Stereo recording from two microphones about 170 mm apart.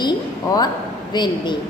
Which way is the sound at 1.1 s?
25° left (ahead or behind).